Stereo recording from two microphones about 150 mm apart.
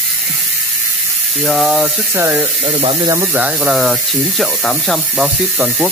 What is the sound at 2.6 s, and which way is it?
Speech, 40° right (ahead or behind).